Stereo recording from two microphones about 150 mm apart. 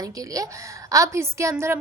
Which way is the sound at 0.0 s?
25° right (ahead or behind).